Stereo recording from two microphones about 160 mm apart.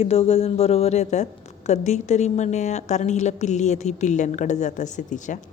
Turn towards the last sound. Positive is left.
turn(degrees=50)  # may be behind; listen again after turning